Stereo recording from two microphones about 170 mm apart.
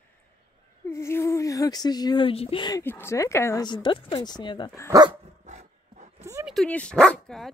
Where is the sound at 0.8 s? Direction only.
15° left (ahead or behind).